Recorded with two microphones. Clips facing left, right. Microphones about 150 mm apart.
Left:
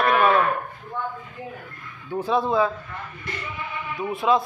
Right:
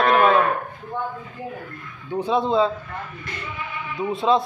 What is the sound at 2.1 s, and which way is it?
Speech, 20° right (ahead or behind).